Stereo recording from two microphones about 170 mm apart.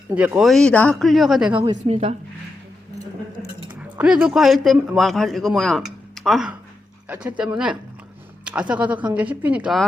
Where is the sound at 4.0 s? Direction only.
5° right (ahead or behind).